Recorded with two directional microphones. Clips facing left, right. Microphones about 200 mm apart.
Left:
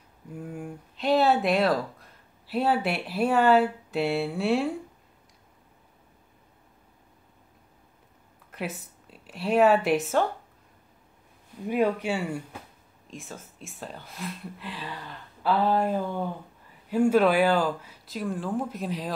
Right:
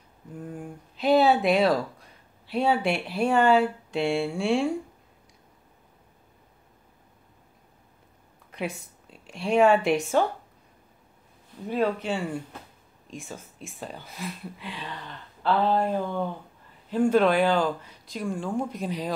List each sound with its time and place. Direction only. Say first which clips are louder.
0.3 s speech: left 1 dB; 5° left (ahead or behind)
8.5 s a sound: right 2 dB; 5° left (ahead or behind)
9.2 s speech: right 1 dB; 5° left (ahead or behind)
11.6 s speech: left 1 dB; 10° left (ahead or behind)